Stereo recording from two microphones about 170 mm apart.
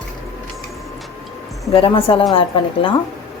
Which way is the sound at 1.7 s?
35° left (ahead or behind).